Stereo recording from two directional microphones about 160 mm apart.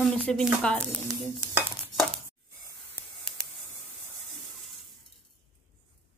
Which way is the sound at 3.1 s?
5° left (ahead or behind).